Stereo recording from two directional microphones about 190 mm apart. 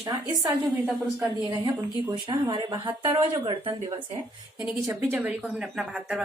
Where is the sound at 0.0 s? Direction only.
20° right (ahead or behind).